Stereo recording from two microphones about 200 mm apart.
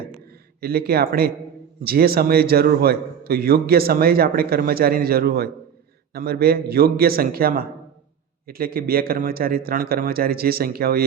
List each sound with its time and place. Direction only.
0.6 s a man's voice: 50° right (ahead or behind)